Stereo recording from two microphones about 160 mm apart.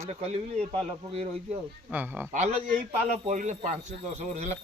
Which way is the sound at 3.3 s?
50° right (ahead or behind).